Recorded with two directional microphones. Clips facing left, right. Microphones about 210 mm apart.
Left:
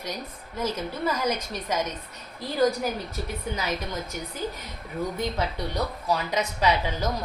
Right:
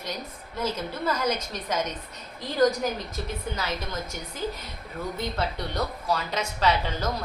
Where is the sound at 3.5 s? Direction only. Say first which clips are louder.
Left 3 dB; 15° left (ahead or behind).